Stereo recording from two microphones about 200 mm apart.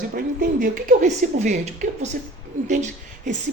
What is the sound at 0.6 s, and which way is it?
Speech, 40° right (ahead or behind).